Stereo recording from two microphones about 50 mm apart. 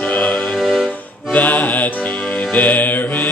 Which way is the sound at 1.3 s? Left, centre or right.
Left.